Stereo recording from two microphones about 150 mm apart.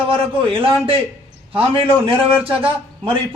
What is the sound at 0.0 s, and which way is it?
A man's voice, 35° right (ahead or behind).